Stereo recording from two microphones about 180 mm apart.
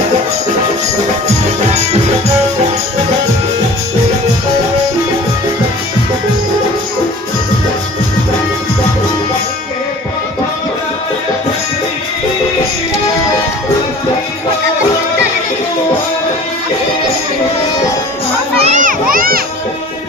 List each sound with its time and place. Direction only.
18.6 s children playing: 45° right (ahead or behind)